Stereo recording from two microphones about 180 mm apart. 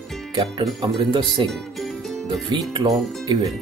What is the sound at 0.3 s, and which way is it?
Speech, 25° right (ahead or behind).